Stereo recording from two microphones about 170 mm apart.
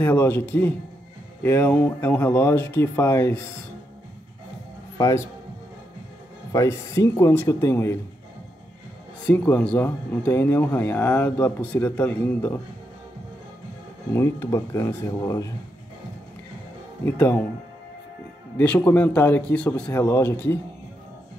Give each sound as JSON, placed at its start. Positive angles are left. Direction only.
{"t": 0.0, "sound": "speech", "side_deg": 10}
{"t": 4.9, "sound": "speech", "side_deg": 20}
{"t": 6.5, "sound": "speech", "side_deg": 20}
{"t": 9.2, "sound": "speech", "side_deg": 10}
{"t": 14.1, "sound": "speech", "side_deg": 15}
{"t": 17.0, "sound": "speech", "side_deg": 10}
{"t": 18.9, "sound": "speech", "side_deg": 10}